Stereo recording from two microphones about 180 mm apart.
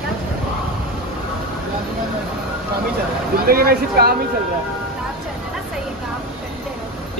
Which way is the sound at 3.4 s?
55° right (ahead or behind).